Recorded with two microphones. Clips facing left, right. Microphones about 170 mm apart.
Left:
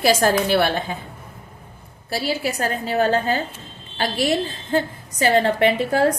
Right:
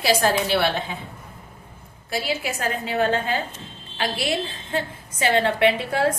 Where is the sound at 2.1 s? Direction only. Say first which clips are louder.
Left 3 dB; 35° left (ahead or behind).